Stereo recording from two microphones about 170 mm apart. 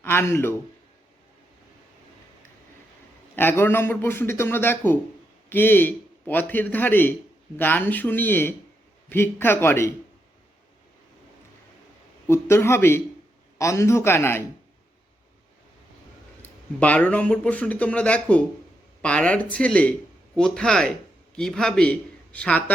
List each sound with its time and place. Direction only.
0.0 s speech: 15° left (ahead or behind)
3.3 s speech: 15° left (ahead or behind)
12.3 s speech: 15° left (ahead or behind)
16.4 s speech: 10° left (ahead or behind)